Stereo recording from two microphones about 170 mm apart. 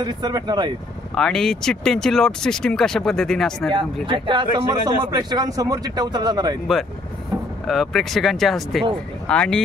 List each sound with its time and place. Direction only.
0.0 s speech: 25° right (ahead or behind)
1.1 s speech: 5° left (ahead or behind)
3.7 s speech: 30° right (ahead or behind)
7.6 s speech: centre (ahead or behind)